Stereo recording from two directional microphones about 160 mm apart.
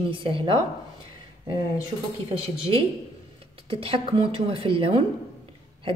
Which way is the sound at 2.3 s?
40° right (ahead or behind).